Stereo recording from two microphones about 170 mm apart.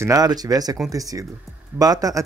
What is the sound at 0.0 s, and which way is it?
Speech, 20° right (ahead or behind).